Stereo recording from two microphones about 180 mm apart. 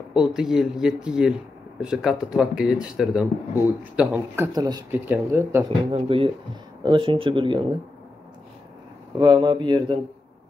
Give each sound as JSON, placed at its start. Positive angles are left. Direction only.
{"t": 0.1, "sound": "speech", "side_deg": -5}
{"t": 4.5, "sound": "speech", "side_deg": -20}
{"t": 5.9, "sound": "speech", "side_deg": -30}
{"t": 9.2, "sound": "speech", "side_deg": -25}